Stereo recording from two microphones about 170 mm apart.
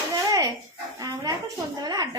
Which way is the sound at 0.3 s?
20° right (ahead or behind).